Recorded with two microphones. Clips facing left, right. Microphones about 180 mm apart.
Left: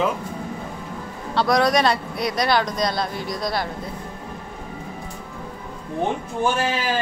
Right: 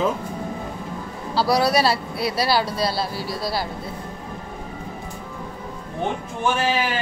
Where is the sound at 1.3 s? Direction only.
5° right (ahead or behind).